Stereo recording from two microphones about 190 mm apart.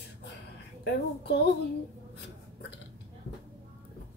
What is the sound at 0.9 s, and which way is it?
Speech, 60° left (ahead or behind).